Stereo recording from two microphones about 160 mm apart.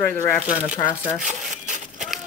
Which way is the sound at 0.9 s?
5° right (ahead or behind).